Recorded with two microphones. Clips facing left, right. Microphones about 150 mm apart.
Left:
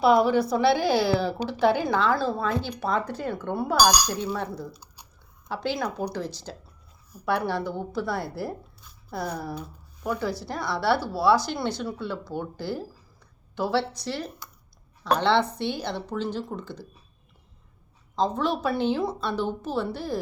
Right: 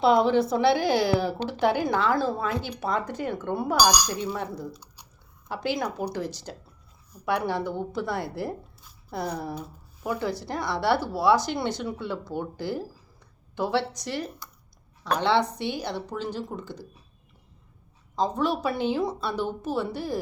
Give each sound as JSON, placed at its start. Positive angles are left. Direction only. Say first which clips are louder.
{"t": 0.0, "sound": "a woman's voice", "louder": "even", "side_deg": -20}
{"t": 18.2, "sound": "speech", "louder": "even", "side_deg": -10}